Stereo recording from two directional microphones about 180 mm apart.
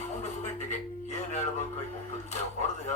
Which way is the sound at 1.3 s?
40° left (ahead or behind).